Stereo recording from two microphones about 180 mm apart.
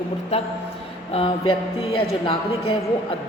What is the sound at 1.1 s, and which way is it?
A woman's voice, 30° left (ahead or behind).